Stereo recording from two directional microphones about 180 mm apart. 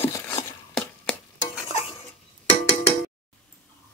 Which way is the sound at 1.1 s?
10° left (ahead or behind).